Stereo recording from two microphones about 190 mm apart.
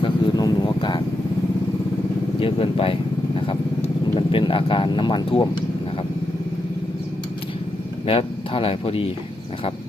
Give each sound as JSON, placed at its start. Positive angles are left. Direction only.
{"t": 0.0, "sound": "vehicle", "side_deg": 20}
{"t": 2.4, "sound": "speech", "side_deg": 30}
{"t": 4.3, "sound": "speech", "side_deg": 25}
{"t": 8.0, "sound": "speech", "side_deg": 30}